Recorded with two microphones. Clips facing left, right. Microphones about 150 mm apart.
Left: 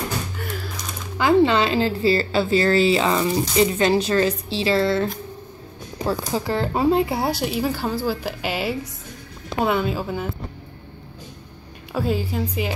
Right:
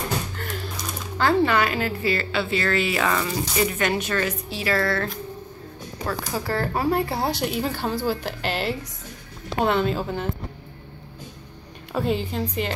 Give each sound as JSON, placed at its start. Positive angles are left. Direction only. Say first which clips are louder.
{"t": 1.1, "sound": "a woman's voice", "louder": "left 3 dB", "side_deg": 20}
{"t": 11.9, "sound": "a woman's voice", "louder": "left 1 dB", "side_deg": 0}